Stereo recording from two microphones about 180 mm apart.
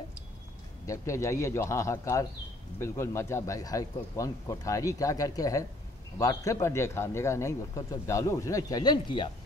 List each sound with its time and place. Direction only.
0.8 s speech: 15° left (ahead or behind)